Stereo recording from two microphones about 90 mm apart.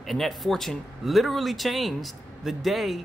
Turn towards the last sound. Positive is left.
turn(degrees=0)  # may be behind; listen again after turning